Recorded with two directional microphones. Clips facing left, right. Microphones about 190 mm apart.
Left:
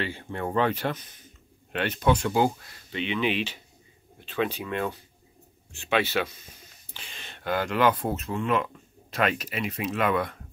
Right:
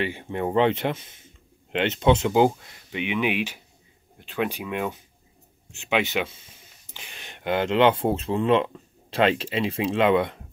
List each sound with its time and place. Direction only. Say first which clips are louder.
0.0 s speech: right 4 dB; 15° right (ahead or behind)